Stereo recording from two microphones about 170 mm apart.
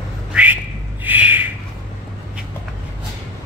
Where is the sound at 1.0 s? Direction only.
10° right (ahead or behind).